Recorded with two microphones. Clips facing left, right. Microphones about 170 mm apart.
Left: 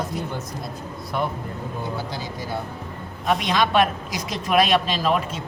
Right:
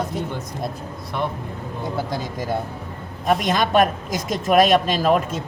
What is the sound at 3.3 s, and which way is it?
Speech, 45° right (ahead or behind).